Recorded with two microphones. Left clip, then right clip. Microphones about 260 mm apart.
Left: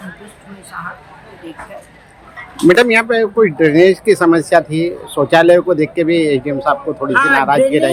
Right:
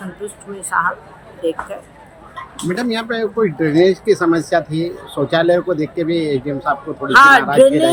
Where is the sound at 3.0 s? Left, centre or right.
Centre.